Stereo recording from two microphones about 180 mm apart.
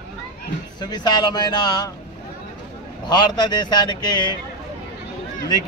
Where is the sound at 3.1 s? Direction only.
25° left (ahead or behind).